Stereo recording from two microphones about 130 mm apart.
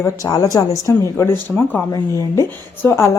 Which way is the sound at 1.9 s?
25° left (ahead or behind).